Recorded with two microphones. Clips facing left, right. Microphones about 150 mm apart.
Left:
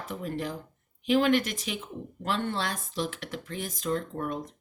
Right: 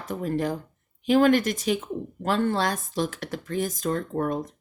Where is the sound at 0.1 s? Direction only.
45° right (ahead or behind).